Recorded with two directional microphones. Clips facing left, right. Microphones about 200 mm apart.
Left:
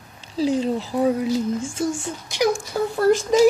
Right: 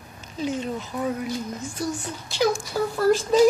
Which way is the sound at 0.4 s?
30° left (ahead or behind).